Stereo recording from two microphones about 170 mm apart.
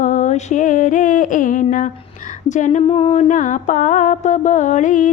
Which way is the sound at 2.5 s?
45° left (ahead or behind).